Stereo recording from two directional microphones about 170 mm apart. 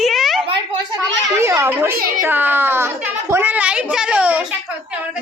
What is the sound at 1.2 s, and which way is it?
A child's voice, 15° right (ahead or behind).